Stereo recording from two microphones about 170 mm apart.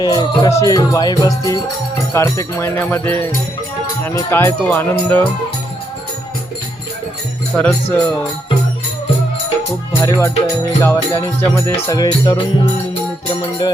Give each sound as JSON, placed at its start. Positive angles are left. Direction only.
{"t": 0.0, "sound": "music", "side_deg": 25}
{"t": 2.1, "sound": "speech", "side_deg": 20}
{"t": 7.5, "sound": "speech", "side_deg": 10}
{"t": 10.0, "sound": "music", "side_deg": 20}